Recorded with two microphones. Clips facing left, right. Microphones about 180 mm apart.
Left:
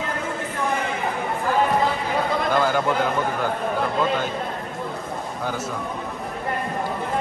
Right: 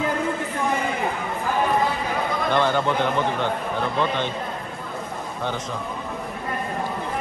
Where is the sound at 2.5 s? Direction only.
5° left (ahead or behind).